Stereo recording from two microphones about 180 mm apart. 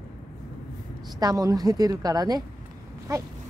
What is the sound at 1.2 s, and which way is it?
A woman's voice, 20° right (ahead or behind).